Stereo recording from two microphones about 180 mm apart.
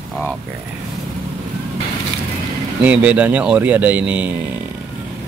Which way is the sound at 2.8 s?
10° right (ahead or behind).